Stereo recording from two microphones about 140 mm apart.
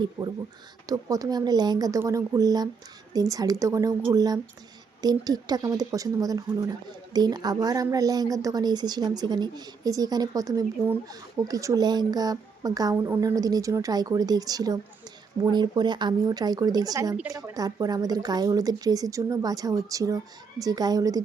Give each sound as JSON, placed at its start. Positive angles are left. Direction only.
{"t": 0.2, "sound": "speech", "side_deg": -30}